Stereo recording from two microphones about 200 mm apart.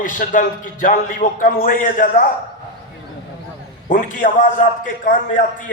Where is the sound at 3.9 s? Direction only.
40° left (ahead or behind).